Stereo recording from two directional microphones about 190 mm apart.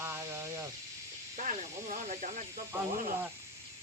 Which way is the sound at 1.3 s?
40° right (ahead or behind).